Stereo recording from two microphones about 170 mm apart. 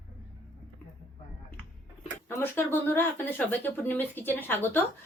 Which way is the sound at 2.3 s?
15° left (ahead or behind).